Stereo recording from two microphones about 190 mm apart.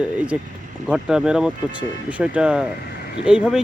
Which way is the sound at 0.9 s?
5° right (ahead or behind).